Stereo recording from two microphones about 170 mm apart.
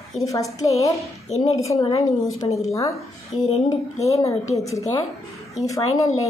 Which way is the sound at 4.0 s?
20° left (ahead or behind).